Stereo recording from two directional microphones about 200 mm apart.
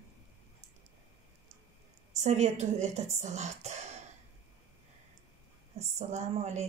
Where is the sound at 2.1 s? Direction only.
35° right (ahead or behind).